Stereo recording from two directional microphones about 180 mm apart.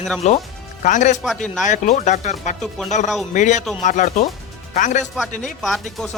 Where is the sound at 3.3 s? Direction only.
40° left (ahead or behind).